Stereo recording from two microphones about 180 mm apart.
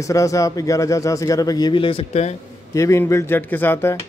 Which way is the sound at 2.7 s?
15° left (ahead or behind).